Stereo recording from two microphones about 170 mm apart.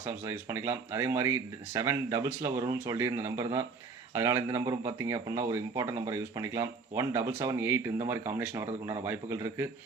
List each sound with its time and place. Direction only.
0.0 s speech: 15° right (ahead or behind)